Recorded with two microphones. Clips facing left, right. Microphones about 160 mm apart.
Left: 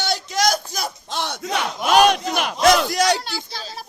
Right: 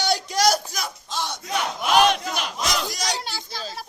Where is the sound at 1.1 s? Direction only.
65° left (ahead or behind).